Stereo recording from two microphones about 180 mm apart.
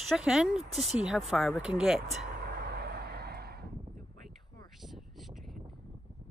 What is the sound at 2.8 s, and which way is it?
Vehicle, 60° right (ahead or behind).